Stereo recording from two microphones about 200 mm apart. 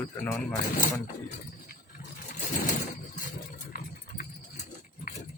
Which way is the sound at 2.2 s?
40° left (ahead or behind).